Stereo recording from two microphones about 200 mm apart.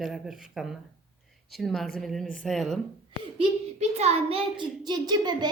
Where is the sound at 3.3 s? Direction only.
35° right (ahead or behind).